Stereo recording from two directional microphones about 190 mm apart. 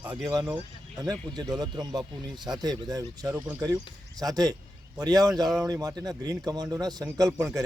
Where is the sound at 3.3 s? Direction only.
5° right (ahead or behind).